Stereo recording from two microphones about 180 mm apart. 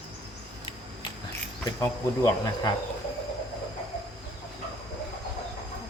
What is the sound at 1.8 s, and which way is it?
Speech, 15° left (ahead or behind).